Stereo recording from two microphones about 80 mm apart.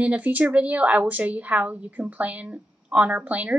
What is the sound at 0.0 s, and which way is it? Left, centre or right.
A woman's voice, centre.